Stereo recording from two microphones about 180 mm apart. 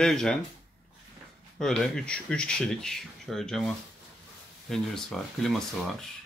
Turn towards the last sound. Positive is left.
turn(degrees=0)  # may be behind; listen again after turning